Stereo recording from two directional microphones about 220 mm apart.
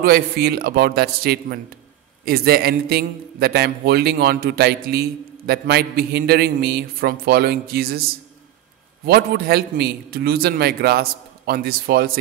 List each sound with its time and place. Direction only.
0.0 s a man's voice: 45° right (ahead or behind)
9.0 s a man's voice: 45° right (ahead or behind)